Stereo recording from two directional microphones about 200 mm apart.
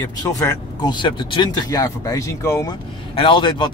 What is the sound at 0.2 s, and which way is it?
Speech, 20° left (ahead or behind).